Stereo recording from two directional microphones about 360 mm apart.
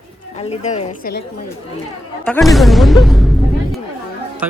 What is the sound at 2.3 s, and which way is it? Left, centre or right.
Speech, centre.